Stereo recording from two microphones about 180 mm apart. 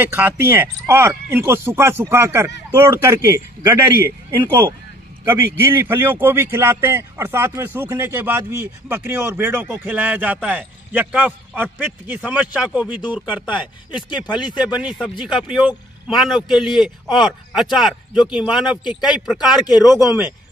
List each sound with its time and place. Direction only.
0.0 s a man's voice: 10° right (ahead or behind)
13.5 s speech: 25° left (ahead or behind)
14.6 s a man's voice: 5° right (ahead or behind)
18.9 s speech: 25° left (ahead or behind)
19.1 s a man's voice: centre (ahead or behind)